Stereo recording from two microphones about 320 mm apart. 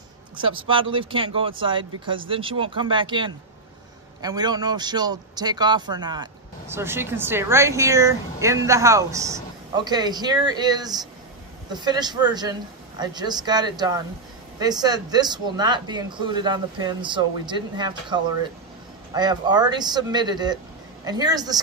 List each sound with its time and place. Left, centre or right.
0.4 s speech: centre